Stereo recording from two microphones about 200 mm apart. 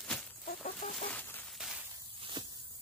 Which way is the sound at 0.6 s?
35° left (ahead or behind).